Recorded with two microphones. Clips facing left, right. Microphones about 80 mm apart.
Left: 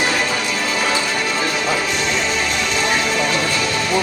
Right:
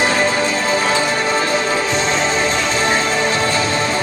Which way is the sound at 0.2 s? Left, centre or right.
Right.